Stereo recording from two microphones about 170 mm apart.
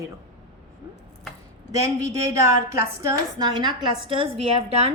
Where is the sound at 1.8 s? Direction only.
20° right (ahead or behind).